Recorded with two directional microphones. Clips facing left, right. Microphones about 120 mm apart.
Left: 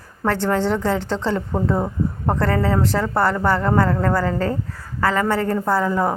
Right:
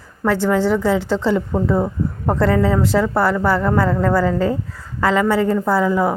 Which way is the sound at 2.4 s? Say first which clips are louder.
Right 4 dB; 15° right (ahead or behind).